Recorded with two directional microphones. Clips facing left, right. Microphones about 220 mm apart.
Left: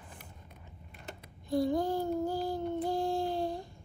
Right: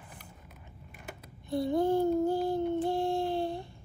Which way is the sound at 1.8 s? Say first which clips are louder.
Right 5 dB; 60° right (ahead or behind).